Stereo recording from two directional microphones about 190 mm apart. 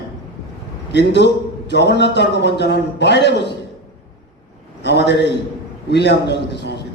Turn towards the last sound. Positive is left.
turn(degrees=65)  # may be behind; listen again after turning